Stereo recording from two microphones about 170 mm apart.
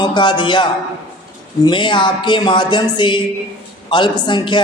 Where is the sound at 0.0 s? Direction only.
25° left (ahead or behind).